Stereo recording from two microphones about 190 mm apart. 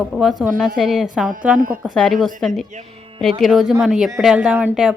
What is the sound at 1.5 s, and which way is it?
Speech, 45° right (ahead or behind).